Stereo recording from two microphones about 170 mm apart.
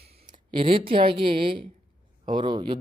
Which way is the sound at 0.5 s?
30° right (ahead or behind).